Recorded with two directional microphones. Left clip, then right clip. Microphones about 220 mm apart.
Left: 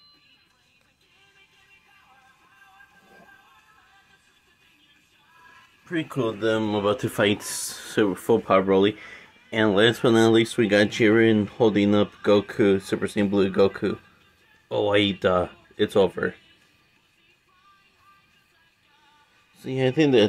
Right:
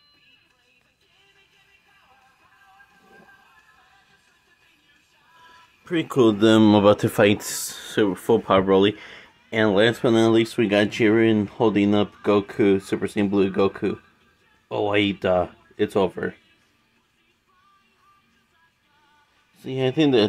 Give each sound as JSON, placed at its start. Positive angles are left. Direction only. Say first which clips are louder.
{"t": 5.9, "sound": "speech", "louder": "right 8 dB", "side_deg": -45}
{"t": 6.8, "sound": "speech", "louder": "right 6 dB", "side_deg": -30}
{"t": 7.7, "sound": "speech", "louder": "right 1 dB", "side_deg": 0}
{"t": 19.5, "sound": "speech", "louder": "even", "side_deg": 5}